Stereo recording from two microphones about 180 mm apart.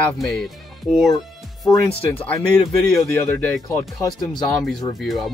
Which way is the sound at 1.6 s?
20° left (ahead or behind).